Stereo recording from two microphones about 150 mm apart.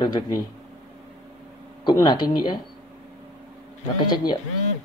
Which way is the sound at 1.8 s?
30° left (ahead or behind).